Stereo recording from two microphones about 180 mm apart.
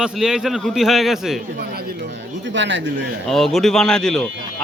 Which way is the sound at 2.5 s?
90° right.